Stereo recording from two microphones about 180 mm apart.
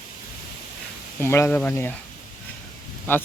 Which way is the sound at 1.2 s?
10° left (ahead or behind).